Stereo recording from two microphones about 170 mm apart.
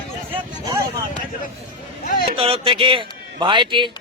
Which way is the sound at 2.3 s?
35° right (ahead or behind).